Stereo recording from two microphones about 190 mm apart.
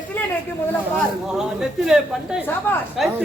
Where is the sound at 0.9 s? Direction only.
Centre (ahead or behind).